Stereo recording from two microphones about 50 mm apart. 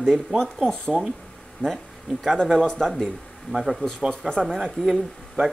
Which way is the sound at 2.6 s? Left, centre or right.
Centre.